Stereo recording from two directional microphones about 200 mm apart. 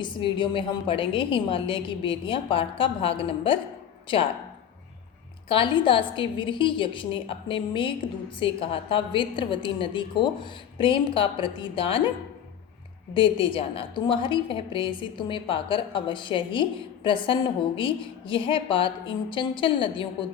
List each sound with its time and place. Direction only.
0.0 s a woman's voice: 25° left (ahead or behind)
5.5 s a woman's voice: 25° left (ahead or behind)
13.1 s a woman's voice: 25° left (ahead or behind)